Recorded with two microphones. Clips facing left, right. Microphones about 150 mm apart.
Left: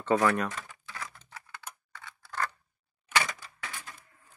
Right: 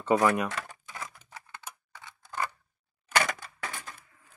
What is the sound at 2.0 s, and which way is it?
Scissors, 15° right (ahead or behind).